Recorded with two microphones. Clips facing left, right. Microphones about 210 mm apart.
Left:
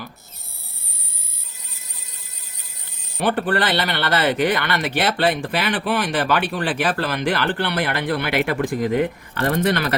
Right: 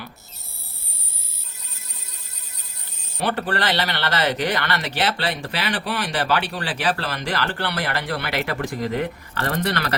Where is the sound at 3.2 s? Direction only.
55° left (ahead or behind).